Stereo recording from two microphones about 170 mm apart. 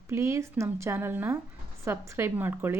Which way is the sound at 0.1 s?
15° right (ahead or behind).